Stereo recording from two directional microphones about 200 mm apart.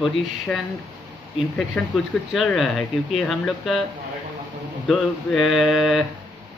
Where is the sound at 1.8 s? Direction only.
5° left (ahead or behind).